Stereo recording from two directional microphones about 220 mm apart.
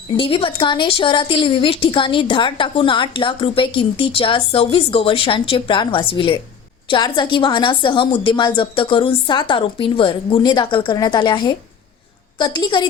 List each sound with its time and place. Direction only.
0.1 s a woman's voice: 25° left (ahead or behind)